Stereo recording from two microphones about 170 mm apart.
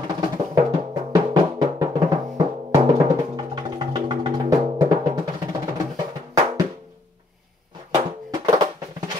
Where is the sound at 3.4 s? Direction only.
25° right (ahead or behind).